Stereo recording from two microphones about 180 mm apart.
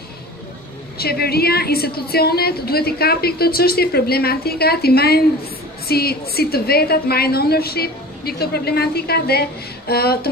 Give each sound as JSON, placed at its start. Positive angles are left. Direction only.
{"t": 0.9, "sound": "a woman's voice", "side_deg": 60}